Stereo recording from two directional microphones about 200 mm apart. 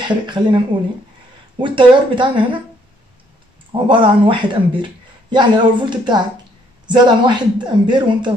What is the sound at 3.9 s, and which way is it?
Speech, 25° right (ahead or behind).